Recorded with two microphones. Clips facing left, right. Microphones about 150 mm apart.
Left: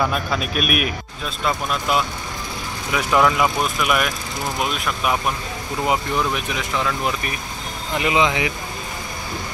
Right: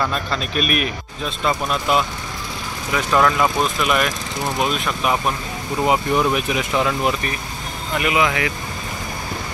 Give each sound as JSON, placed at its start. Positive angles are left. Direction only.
{"t": 0.0, "sound": "speech", "side_deg": 5}
{"t": 6.1, "sound": "speech", "side_deg": -10}
{"t": 7.9, "sound": "speech", "side_deg": 20}